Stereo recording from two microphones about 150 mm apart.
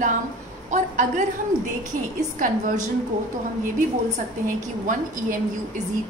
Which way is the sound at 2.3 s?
60° right (ahead or behind).